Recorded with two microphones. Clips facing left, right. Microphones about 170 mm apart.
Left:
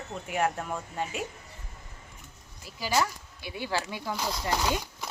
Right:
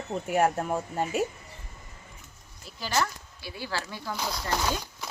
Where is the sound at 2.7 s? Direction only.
5° left (ahead or behind).